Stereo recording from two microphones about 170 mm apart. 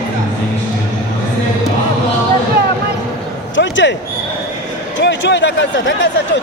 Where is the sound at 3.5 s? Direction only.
90° left.